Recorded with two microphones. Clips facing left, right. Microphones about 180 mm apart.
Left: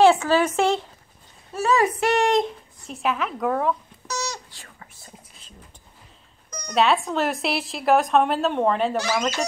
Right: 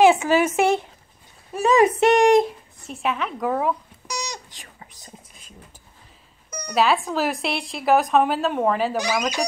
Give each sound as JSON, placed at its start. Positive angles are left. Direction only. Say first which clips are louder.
{"t": 0.0, "sound": "speech", "louder": "right 1 dB", "side_deg": -10}
{"t": 2.9, "sound": "a sound", "louder": "even", "side_deg": 0}
{"t": 6.5, "sound": "speech", "louder": "even", "side_deg": -5}
{"t": 8.9, "sound": "speech", "louder": "even", "side_deg": -15}